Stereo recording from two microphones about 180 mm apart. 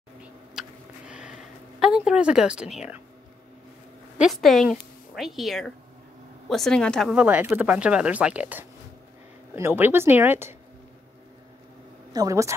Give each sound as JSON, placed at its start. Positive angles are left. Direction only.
{"t": 0.6, "sound": "a sound", "side_deg": -5}
{"t": 1.8, "sound": "a woman's voice", "side_deg": -5}
{"t": 4.2, "sound": "a woman's voice", "side_deg": 0}
{"t": 12.1, "sound": "speech", "side_deg": -20}